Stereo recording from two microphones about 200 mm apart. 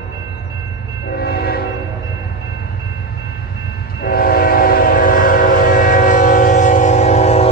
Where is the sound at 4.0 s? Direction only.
50° left (ahead or behind).